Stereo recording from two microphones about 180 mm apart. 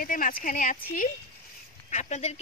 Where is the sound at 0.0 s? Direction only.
50° left (ahead or behind).